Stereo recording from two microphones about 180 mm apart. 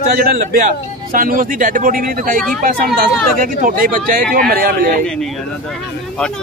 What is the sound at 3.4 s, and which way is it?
Speech, 50° right (ahead or behind).